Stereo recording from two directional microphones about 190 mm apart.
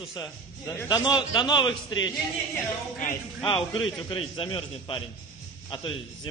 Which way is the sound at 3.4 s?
25° left (ahead or behind).